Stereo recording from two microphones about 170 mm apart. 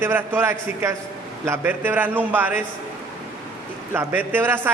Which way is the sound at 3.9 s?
10° right (ahead or behind).